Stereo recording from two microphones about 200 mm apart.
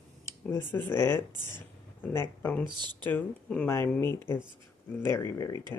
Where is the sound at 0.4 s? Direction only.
10° left (ahead or behind).